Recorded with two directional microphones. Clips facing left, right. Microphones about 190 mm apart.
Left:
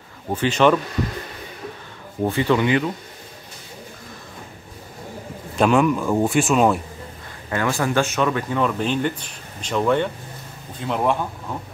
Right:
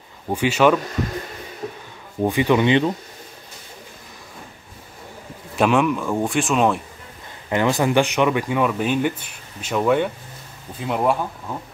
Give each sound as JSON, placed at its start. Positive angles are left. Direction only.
{"t": 0.3, "sound": "speech", "side_deg": -10}
{"t": 2.2, "sound": "speech", "side_deg": -15}
{"t": 5.6, "sound": "speech", "side_deg": 0}
{"t": 7.4, "sound": "speech", "side_deg": -20}